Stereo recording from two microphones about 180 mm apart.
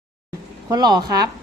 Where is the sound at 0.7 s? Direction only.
20° right (ahead or behind).